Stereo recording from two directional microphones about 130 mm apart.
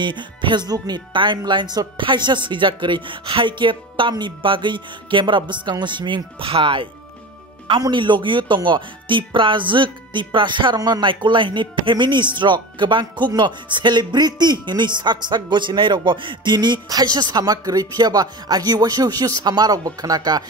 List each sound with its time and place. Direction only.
0.0 s speech: 35° right (ahead or behind)